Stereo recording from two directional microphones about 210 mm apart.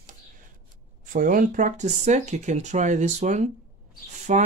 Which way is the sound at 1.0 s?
40° right (ahead or behind).